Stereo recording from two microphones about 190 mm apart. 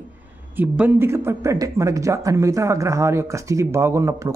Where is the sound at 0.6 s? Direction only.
10° right (ahead or behind).